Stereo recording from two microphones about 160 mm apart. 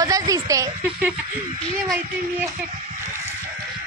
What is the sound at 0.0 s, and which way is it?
Speech, 20° right (ahead or behind).